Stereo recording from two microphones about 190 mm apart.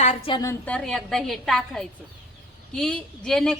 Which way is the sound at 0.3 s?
20° left (ahead or behind).